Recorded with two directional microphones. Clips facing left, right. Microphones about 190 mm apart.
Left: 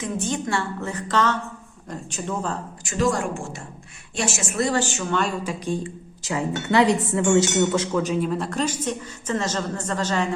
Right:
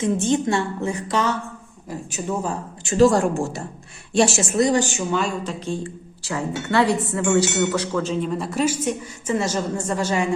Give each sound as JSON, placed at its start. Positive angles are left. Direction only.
{"t": 0.0, "sound": "speech", "side_deg": -25}
{"t": 2.8, "sound": "speech", "side_deg": -35}
{"t": 4.5, "sound": "speech", "side_deg": -15}
{"t": 5.4, "sound": "speech", "side_deg": 10}